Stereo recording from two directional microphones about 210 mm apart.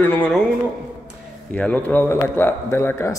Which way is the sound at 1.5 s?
5° left (ahead or behind).